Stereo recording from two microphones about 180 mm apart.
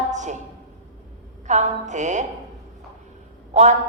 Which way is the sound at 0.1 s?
40° right (ahead or behind).